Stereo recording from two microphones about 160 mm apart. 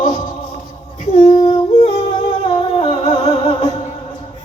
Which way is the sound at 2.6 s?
40° left (ahead or behind).